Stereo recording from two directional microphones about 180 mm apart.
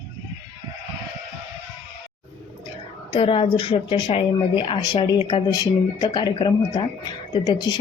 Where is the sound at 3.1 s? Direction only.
30° left (ahead or behind).